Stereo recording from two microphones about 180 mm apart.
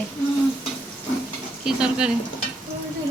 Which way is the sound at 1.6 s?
5° right (ahead or behind).